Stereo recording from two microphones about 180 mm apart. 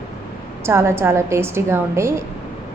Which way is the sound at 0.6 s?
15° right (ahead or behind).